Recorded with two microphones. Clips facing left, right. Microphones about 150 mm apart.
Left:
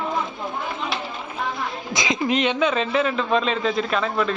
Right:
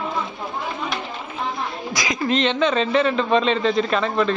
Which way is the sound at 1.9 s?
25° left (ahead or behind).